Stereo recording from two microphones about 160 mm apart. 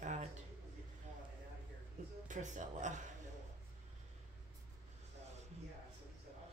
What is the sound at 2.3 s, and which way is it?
Speech, 50° right (ahead or behind).